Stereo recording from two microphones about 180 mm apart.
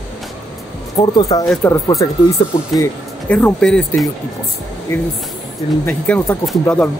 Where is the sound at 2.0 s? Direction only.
20° left (ahead or behind).